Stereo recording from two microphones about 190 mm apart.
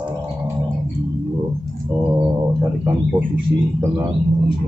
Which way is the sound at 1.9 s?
15° right (ahead or behind).